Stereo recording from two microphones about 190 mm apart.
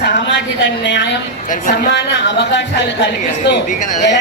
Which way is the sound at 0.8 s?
65° left (ahead or behind).